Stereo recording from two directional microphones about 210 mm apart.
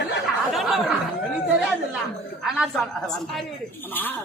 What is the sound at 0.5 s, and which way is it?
Speech, centre (ahead or behind).